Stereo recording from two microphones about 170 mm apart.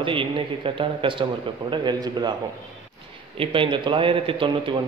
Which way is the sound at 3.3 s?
30° right (ahead or behind).